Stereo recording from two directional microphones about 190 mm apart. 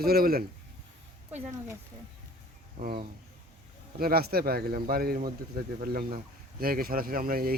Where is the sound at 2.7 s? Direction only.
50° right (ahead or behind).